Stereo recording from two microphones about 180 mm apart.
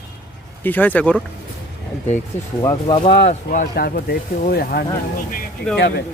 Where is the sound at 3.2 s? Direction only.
45° left (ahead or behind).